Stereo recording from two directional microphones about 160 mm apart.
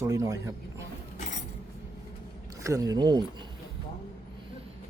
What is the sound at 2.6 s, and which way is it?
Speech, 20° right (ahead or behind).